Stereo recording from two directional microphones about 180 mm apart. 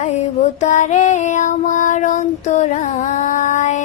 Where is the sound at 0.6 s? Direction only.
40° left (ahead or behind).